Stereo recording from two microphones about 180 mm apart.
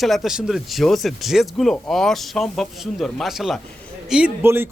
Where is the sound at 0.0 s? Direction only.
Centre (ahead or behind).